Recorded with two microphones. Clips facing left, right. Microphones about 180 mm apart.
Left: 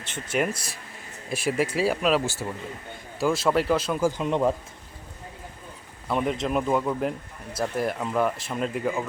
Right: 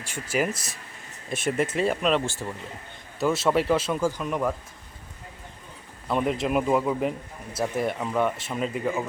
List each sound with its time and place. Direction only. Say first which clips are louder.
0.1 s speech: even; 5° right (ahead or behind)
0.5 s speech: left 1 dB; 30° left (ahead or behind)
1.3 s speech: even; centre (ahead or behind)
3.2 s speech: even; centre (ahead or behind)
4.2 s speech: left 4 dB; 25° left (ahead or behind)
6.1 s speech: right 1 dB; centre (ahead or behind)